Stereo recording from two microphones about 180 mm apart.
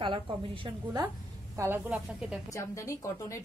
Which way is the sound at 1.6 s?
10° right (ahead or behind).